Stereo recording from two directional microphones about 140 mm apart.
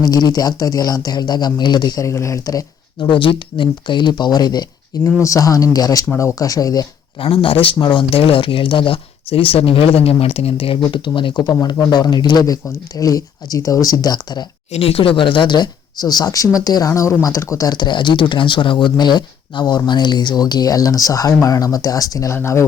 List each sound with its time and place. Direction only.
0.0 s speech: 25° left (ahead or behind)
7.2 s speech: 40° left (ahead or behind)
14.7 s speech: 45° left (ahead or behind); by 22.6 s 20° left (ahead or behind)